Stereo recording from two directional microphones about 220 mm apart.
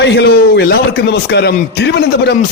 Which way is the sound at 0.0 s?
50° left (ahead or behind).